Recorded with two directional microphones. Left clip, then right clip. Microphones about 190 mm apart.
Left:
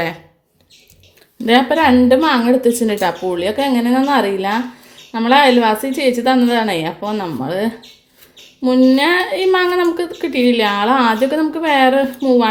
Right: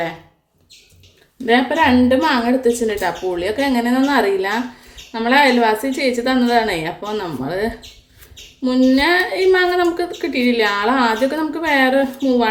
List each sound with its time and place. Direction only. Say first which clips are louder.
1.5 s a woman's voice: left 2 dB; 40° left (ahead or behind)